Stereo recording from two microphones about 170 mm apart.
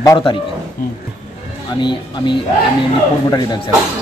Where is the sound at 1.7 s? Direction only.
25° left (ahead or behind).